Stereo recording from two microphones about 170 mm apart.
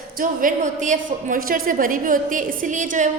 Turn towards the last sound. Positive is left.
turn(degrees=-50)  # may be behind; listen again after turning